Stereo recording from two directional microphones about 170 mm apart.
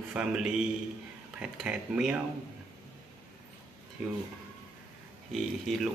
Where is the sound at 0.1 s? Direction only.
5° right (ahead or behind).